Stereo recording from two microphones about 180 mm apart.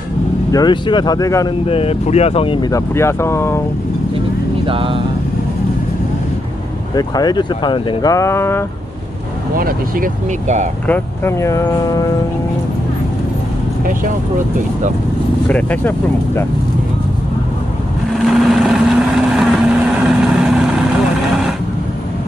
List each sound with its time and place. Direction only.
0.5 s speech: 25° left (ahead or behind)
1.7 s speech: 35° left (ahead or behind)
2.7 s speech: 15° left (ahead or behind)
4.6 s speech: 30° right (ahead or behind)
7.0 s speech: 20° left (ahead or behind)
9.6 s speech: 55° right (ahead or behind)
10.9 s speech: 15° left (ahead or behind)
15.4 s speech: 10° left (ahead or behind)
18.1 s vehicle: centre (ahead or behind)